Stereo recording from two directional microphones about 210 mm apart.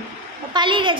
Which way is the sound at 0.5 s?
25° right (ahead or behind).